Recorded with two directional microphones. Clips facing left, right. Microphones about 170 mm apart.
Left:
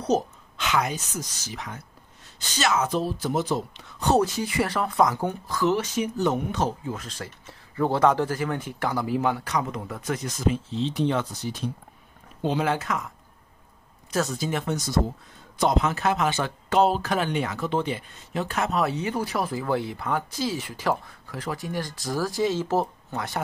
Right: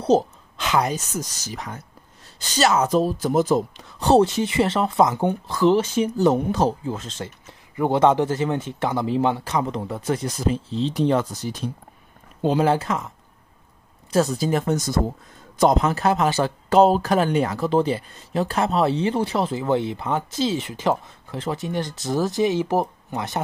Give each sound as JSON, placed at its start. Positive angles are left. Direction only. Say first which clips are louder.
{"t": 0.0, "sound": "speech", "louder": "right 6 dB", "side_deg": -30}
{"t": 4.0, "sound": "speech", "louder": "right 5 dB", "side_deg": -30}
{"t": 12.4, "sound": "speech", "louder": "right 6 dB", "side_deg": -40}
{"t": 14.1, "sound": "speech", "louder": "right 6 dB", "side_deg": -35}